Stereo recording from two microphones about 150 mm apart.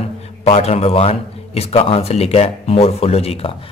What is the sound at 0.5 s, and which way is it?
Speech, 45° left (ahead or behind).